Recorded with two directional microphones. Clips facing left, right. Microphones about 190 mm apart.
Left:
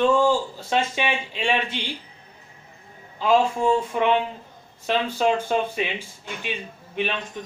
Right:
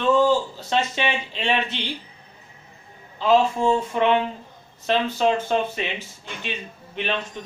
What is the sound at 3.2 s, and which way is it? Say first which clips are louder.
Speech: right 1 dB; 10° left (ahead or behind).